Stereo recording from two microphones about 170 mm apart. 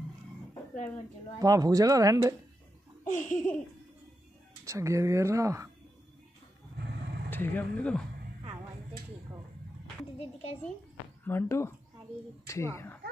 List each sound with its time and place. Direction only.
1.4 s speech: 20° right (ahead or behind)
3.1 s laughter: 50° left (ahead or behind)
4.6 s speech: 20° right (ahead or behind)
7.2 s speech: 10° left (ahead or behind)
10.1 s a child's voice: 35° left (ahead or behind)
11.2 s speech: 15° left (ahead or behind)